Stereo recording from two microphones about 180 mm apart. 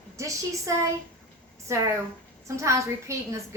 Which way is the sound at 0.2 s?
15° right (ahead or behind).